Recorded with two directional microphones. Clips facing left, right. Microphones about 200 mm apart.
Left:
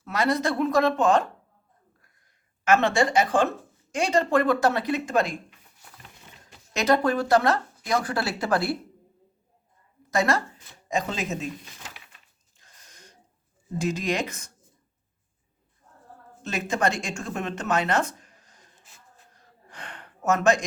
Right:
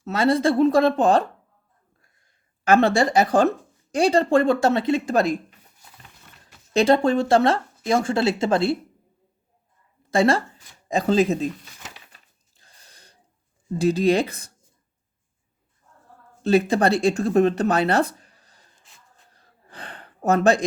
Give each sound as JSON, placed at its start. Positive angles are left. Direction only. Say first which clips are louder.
{"t": 0.0, "sound": "speech", "louder": "right 5 dB", "side_deg": -30}
{"t": 2.6, "sound": "speech", "louder": "right 4 dB", "side_deg": -35}
{"t": 6.7, "sound": "speech", "louder": "right 5 dB", "side_deg": -25}
{"t": 10.1, "sound": "a woman's voice", "louder": "right 5 dB", "side_deg": -30}
{"t": 11.9, "sound": "a sound", "louder": "right 2 dB", "side_deg": -35}
{"t": 13.7, "sound": "speech", "louder": "right 8 dB", "side_deg": -35}
{"t": 16.4, "sound": "speech", "louder": "right 8 dB", "side_deg": -35}
{"t": 19.3, "sound": "a sound", "louder": "right 5 dB", "side_deg": -35}